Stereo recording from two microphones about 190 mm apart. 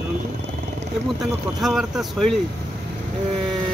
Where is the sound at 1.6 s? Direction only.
Centre (ahead or behind).